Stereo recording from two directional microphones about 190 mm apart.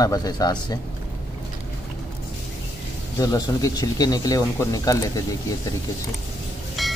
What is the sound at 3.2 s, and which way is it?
Speech, 20° left (ahead or behind).